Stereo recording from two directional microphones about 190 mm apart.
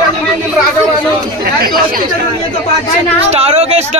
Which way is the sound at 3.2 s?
35° right (ahead or behind).